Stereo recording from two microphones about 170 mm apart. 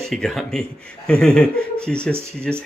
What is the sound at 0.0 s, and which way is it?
Speech, centre (ahead or behind).